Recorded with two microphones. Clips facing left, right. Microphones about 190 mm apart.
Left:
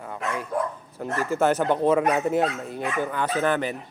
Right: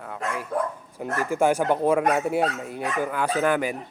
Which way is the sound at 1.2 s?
10° right (ahead or behind).